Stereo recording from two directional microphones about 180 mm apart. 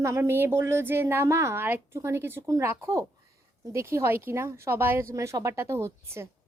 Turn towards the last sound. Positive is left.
turn(degrees=-15)  # may be behind; listen again after turning